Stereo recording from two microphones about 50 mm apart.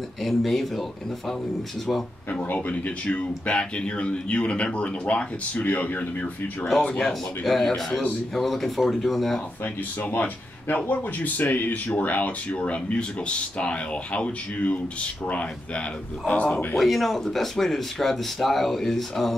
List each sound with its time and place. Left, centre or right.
0.2 s speech: centre
2.5 s speech: left
7.0 s a man's voice: centre
10.1 s a man's voice: left
16.7 s speech: centre